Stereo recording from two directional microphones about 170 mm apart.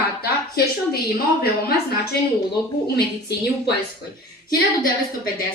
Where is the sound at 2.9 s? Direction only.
80° left.